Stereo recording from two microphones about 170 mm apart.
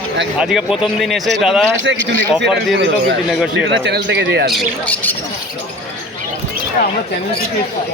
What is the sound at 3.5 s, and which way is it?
Speech, 85° right.